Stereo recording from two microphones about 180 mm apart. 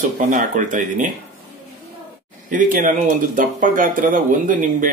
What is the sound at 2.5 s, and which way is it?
Speech, 45° right (ahead or behind).